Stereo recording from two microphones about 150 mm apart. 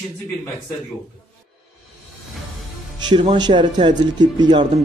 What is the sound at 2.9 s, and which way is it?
Speech, 30° right (ahead or behind).